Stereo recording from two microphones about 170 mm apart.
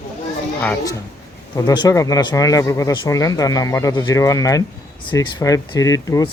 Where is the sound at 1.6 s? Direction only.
20° left (ahead or behind).